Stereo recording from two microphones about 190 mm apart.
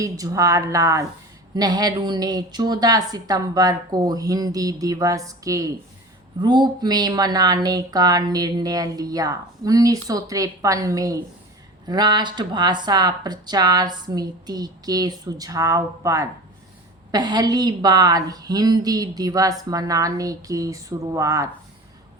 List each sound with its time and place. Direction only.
0.0 s speech: 15° right (ahead or behind)